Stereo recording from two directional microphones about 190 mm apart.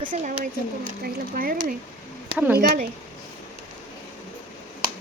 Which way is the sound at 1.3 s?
50° right (ahead or behind).